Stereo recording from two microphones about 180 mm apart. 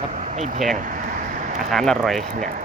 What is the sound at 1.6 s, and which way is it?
Speech, centre (ahead or behind).